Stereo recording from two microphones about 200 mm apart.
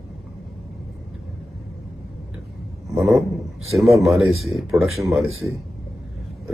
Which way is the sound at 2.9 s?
Centre (ahead or behind).